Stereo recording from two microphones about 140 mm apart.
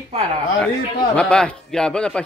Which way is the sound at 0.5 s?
10° left (ahead or behind).